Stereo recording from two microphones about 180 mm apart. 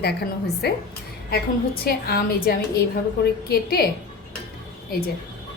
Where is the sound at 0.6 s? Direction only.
60° left (ahead or behind).